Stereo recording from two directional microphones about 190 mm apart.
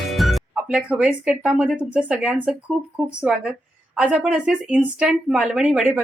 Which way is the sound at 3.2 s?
5° right (ahead or behind).